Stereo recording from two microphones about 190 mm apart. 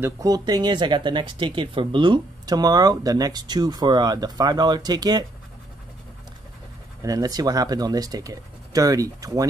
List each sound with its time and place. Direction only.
0.0 s speech: 20° right (ahead or behind)
7.0 s speech: 20° right (ahead or behind)